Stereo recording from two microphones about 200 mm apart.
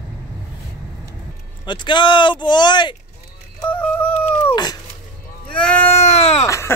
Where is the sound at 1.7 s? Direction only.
25° left (ahead or behind).